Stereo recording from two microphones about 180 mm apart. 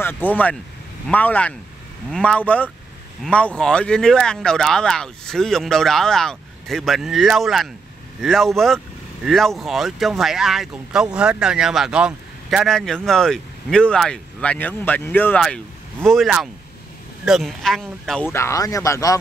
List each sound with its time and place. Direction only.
0.0 s speech: 10° left (ahead or behind)
18.2 s speech: 15° left (ahead or behind)